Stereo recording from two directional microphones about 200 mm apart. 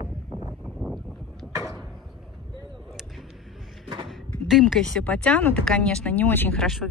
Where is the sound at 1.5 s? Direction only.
15° right (ahead or behind).